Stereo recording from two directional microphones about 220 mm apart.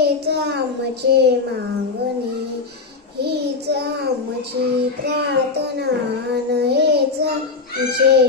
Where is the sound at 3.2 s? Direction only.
50° right (ahead or behind).